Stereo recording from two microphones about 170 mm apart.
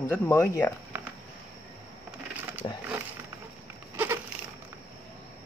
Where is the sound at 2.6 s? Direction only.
30° left (ahead or behind).